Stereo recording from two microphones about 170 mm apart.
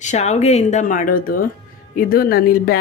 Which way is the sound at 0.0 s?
40° left (ahead or behind).